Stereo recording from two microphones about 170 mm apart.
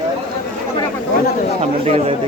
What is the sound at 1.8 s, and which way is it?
Speech, 35° right (ahead or behind).